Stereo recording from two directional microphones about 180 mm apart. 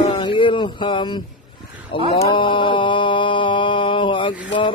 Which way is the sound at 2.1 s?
30° left (ahead or behind).